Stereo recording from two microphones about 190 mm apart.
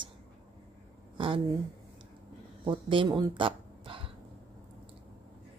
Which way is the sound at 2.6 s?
25° right (ahead or behind).